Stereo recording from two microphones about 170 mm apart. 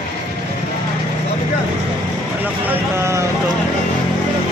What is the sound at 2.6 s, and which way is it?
Speech, 15° right (ahead or behind).